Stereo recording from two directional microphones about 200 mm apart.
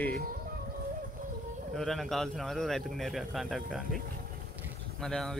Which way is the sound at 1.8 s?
Centre (ahead or behind).